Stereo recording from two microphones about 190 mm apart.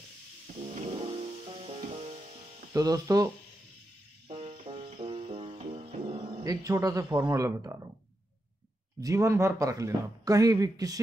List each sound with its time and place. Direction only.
0.7 s music: 30° right (ahead or behind)
2.7 s speech: 20° right (ahead or behind)
4.3 s music: 30° right (ahead or behind)
6.4 s speech: 20° right (ahead or behind)
9.0 s speech: 15° right (ahead or behind)